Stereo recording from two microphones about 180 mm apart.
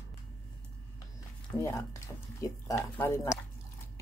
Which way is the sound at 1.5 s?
15° left (ahead or behind).